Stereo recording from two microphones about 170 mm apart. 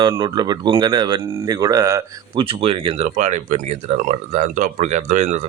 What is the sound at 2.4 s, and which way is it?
Speech, 35° right (ahead or behind).